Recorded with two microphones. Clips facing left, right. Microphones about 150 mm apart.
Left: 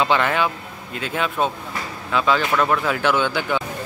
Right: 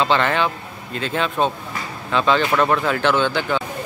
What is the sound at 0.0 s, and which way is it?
Speech, 10° left (ahead or behind).